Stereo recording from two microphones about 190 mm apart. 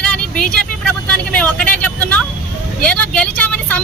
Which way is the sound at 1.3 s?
5° left (ahead or behind).